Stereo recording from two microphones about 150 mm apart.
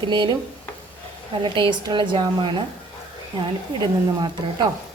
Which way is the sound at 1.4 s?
30° right (ahead or behind).